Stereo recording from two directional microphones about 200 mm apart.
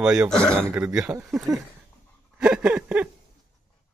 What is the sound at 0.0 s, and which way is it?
Speech, 5° right (ahead or behind).